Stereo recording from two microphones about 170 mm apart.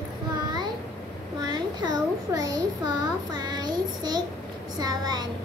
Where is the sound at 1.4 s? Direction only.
25° right (ahead or behind).